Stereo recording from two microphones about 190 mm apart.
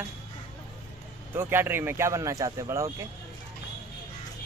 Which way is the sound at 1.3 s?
10° right (ahead or behind).